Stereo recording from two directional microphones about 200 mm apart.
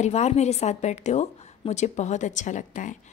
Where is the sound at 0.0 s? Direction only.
35° left (ahead or behind).